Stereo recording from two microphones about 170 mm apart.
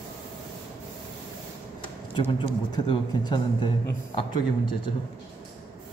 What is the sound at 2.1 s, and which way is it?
A man's voice, 30° left (ahead or behind).